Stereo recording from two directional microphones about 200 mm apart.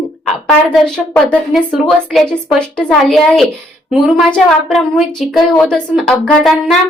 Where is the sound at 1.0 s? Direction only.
5° left (ahead or behind).